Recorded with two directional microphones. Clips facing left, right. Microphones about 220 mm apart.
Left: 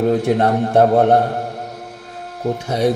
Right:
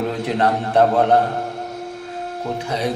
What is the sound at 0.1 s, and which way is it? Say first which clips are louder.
Speech: left 5 dB; 50° left (ahead or behind).